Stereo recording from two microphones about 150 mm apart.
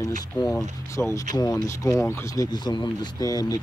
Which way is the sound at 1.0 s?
20° left (ahead or behind).